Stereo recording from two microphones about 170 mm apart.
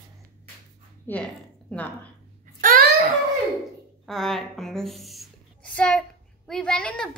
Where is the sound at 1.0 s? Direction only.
10° left (ahead or behind).